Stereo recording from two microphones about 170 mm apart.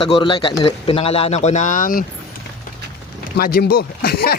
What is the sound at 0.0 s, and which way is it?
Speech, 30° left (ahead or behind).